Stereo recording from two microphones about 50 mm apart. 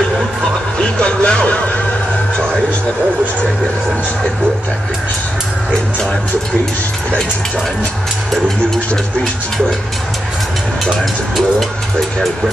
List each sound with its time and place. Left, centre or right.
0.9 s music: centre